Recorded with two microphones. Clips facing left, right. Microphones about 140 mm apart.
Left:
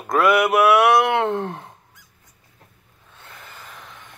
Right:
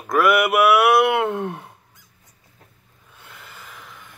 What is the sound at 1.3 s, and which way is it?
Speech, 20° left (ahead or behind).